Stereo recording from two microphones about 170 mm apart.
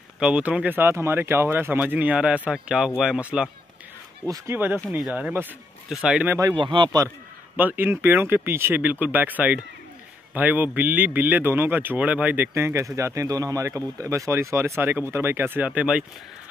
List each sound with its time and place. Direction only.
0.2 s a man's voice: 5° right (ahead or behind)
6.5 s speech: 30° right (ahead or behind)
7.5 s a man's voice: 10° right (ahead or behind)